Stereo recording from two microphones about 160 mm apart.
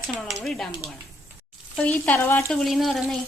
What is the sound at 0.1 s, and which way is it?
Speech, 5° left (ahead or behind).